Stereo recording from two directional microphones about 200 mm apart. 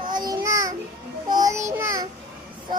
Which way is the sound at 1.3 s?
15° right (ahead or behind).